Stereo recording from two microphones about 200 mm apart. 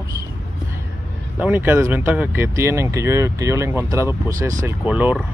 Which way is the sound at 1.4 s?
10° right (ahead or behind).